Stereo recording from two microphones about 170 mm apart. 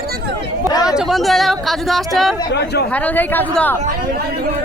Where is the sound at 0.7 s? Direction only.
20° left (ahead or behind).